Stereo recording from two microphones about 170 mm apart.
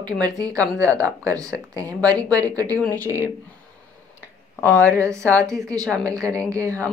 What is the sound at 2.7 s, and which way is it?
Speech, 10° left (ahead or behind).